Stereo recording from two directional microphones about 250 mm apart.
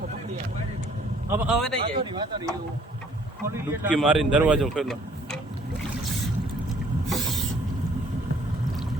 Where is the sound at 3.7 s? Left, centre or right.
Centre.